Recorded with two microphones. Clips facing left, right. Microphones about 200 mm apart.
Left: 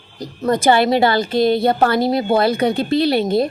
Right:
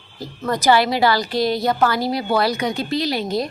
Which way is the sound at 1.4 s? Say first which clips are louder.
Left 7 dB; 55° left (ahead or behind).